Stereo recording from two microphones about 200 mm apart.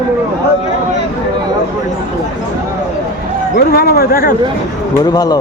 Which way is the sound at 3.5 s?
50° left (ahead or behind).